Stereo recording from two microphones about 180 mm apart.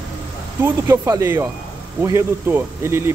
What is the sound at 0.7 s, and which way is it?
A man's voice, 15° right (ahead or behind).